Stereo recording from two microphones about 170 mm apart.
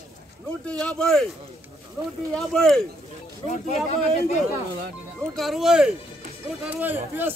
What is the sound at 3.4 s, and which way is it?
Speech, 45° left (ahead or behind).